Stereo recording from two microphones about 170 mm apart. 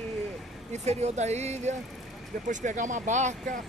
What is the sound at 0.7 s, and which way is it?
Speech, 40° right (ahead or behind).